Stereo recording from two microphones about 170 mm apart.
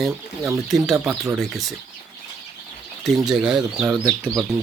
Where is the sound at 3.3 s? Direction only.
5° right (ahead or behind).